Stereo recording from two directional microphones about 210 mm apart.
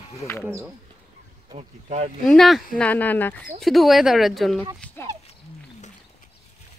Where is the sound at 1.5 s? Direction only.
30° right (ahead or behind).